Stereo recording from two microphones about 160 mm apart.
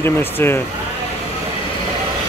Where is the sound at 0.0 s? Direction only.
15° left (ahead or behind).